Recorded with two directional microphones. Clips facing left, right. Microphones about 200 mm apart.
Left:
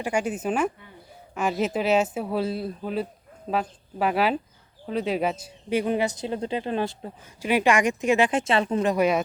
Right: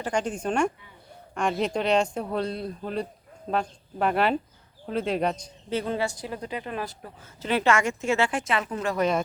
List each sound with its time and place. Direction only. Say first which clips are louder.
0.0 s a woman's voice: left 2 dB; 10° left (ahead or behind); by 7.1 s 25° left (ahead or behind)
7.4 s a woman's voice: left 2 dB; 15° left (ahead or behind)